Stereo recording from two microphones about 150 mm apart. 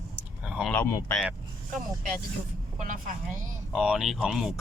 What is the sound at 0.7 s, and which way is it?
Speech, 15° left (ahead or behind).